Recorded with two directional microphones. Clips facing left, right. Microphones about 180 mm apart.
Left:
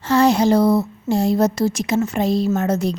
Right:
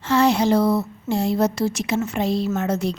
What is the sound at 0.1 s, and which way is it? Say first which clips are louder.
A woman's voice: left 3 dB; 40° left (ahead or behind).